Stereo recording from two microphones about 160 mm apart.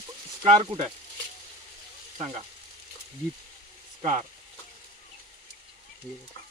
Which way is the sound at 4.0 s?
45° right (ahead or behind).